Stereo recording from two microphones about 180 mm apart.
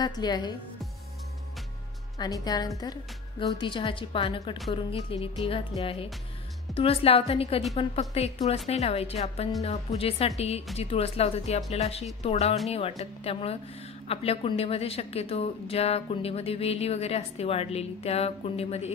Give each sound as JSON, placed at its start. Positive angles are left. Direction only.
{"t": 0.0, "sound": "a woman's voice", "side_deg": 25}
{"t": 2.1, "sound": "a woman's voice", "side_deg": 20}